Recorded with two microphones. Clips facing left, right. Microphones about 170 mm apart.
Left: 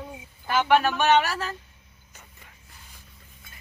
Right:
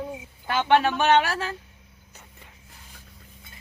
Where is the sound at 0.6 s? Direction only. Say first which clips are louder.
Right 1 dB; 30° right (ahead or behind).